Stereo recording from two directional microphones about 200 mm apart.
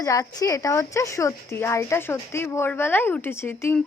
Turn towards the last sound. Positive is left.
turn(degrees=10)  # may be behind; listen again after turning